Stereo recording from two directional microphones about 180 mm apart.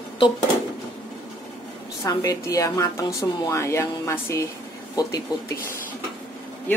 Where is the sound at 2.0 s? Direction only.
20° left (ahead or behind).